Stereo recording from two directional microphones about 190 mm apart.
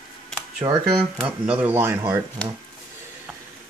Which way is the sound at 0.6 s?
30° right (ahead or behind).